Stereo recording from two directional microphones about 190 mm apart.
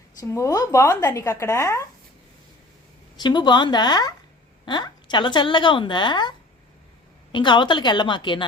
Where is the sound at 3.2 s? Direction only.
25° left (ahead or behind).